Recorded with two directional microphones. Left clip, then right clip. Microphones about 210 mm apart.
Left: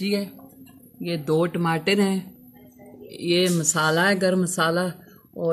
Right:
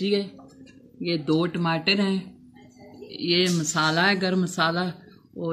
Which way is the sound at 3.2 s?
40° left (ahead or behind).